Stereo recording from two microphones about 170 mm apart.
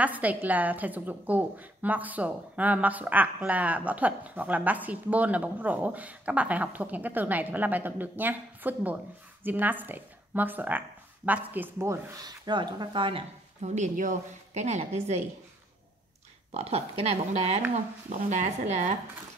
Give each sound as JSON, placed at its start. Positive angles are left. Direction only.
{"t": 0.0, "sound": "a woman's voice", "side_deg": -10}
{"t": 13.6, "sound": "a woman's voice", "side_deg": -45}
{"t": 16.5, "sound": "a woman's voice", "side_deg": -35}